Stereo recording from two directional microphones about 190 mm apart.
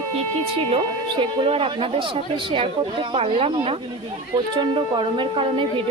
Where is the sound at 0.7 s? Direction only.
25° right (ahead or behind).